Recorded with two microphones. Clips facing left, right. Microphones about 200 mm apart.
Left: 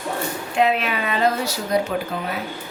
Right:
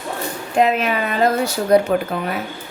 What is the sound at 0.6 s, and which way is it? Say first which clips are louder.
Speech: right 3 dB; 45° right (ahead or behind).